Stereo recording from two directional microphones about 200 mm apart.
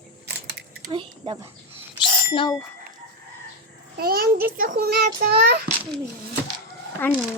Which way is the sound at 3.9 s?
50° right (ahead or behind).